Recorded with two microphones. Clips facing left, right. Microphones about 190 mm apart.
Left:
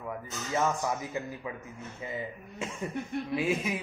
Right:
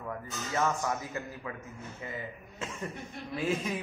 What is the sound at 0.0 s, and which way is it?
Speech, 10° left (ahead or behind).